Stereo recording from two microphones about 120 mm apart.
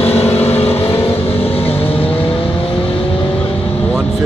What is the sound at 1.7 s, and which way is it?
Vehicle, 20° left (ahead or behind).